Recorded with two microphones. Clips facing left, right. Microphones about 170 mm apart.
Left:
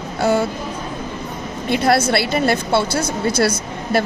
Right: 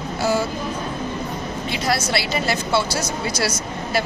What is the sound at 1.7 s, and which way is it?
A woman's voice, 55° left (ahead or behind).